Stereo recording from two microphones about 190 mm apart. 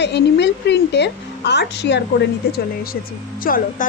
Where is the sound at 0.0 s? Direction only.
65° left (ahead or behind).